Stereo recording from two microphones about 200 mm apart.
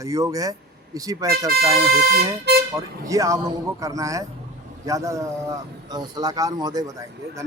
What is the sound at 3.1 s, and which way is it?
Speech, 15° right (ahead or behind).